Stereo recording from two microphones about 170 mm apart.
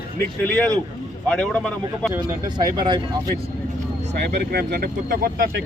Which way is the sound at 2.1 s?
25° right (ahead or behind).